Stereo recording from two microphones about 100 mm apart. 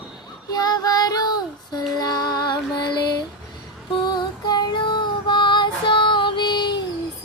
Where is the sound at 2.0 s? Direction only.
45° left (ahead or behind).